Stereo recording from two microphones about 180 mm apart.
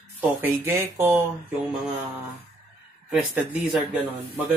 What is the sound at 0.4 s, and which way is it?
Speech, 10° right (ahead or behind).